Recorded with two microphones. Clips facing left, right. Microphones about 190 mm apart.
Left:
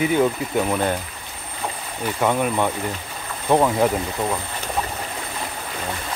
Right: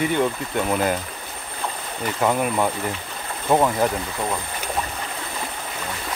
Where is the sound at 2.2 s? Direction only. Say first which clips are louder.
Even; 5° right (ahead or behind).